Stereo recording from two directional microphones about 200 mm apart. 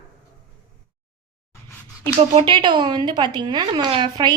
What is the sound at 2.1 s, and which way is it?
Speech, 25° right (ahead or behind).